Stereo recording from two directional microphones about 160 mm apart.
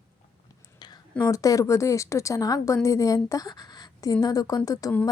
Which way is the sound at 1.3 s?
20° left (ahead or behind).